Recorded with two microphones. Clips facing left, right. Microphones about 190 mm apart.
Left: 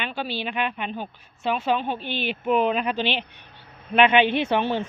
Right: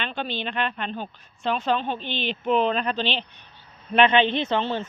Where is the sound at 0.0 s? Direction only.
5° left (ahead or behind).